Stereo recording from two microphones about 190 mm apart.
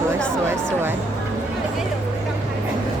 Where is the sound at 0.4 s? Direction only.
10° right (ahead or behind).